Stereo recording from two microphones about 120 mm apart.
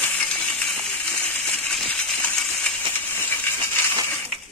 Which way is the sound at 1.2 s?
10° left (ahead or behind).